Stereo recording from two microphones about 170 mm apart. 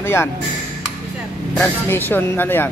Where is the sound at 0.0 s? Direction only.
15° left (ahead or behind).